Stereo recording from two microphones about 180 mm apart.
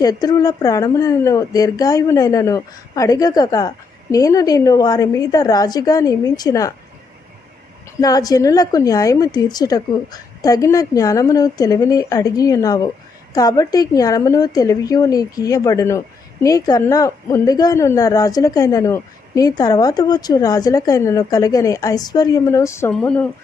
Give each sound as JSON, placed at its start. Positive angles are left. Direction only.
{"t": 0.0, "sound": "a woman's voice", "side_deg": 20}
{"t": 8.0, "sound": "a woman's voice", "side_deg": 20}